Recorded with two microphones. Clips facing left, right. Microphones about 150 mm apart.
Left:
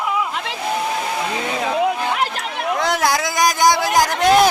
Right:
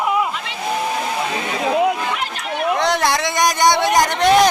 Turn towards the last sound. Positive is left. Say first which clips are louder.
# even
turn(degrees=0)  # may be behind; listen again after turning